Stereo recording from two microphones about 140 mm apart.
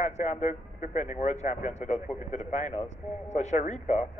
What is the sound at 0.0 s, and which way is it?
Speech, 55° left (ahead or behind).